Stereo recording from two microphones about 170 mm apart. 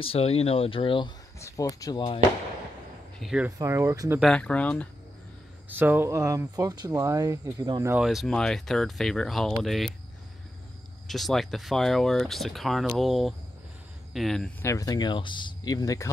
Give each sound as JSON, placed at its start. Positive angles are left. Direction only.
{"t": 0.0, "sound": "speech", "side_deg": 35}
{"t": 3.2, "sound": "speech", "side_deg": -5}
{"t": 3.5, "sound": "speech", "side_deg": -15}
{"t": 4.2, "sound": "speech", "side_deg": 5}
{"t": 5.7, "sound": "speech", "side_deg": -10}
{"t": 7.9, "sound": "speech", "side_deg": 0}
{"t": 11.1, "sound": "speech", "side_deg": 0}
{"t": 14.6, "sound": "speech", "side_deg": 20}